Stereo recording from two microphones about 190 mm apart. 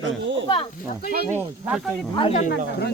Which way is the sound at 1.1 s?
50° right (ahead or behind).